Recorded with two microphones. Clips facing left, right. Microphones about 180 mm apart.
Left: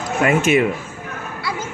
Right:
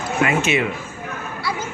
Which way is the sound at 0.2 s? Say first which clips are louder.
Left 4 dB; 45° left (ahead or behind).